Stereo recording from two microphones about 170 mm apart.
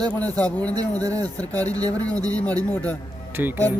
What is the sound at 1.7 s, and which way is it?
Speech, 20° right (ahead or behind).